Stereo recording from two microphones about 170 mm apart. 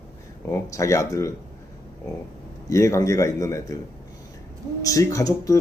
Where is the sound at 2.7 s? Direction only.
20° left (ahead or behind).